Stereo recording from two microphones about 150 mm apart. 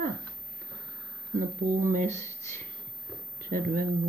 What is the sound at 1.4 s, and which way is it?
Speech, 60° right (ahead or behind).